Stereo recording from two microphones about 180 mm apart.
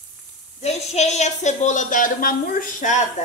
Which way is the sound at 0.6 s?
40° left (ahead or behind).